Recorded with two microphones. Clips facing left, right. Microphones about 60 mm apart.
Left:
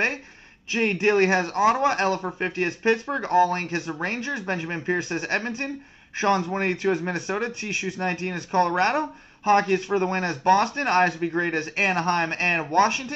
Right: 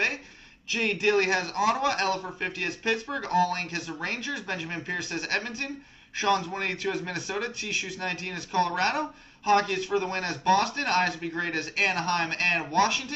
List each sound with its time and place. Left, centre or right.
0.7 s speech: left